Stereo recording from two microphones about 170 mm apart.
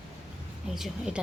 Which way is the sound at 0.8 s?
5° right (ahead or behind).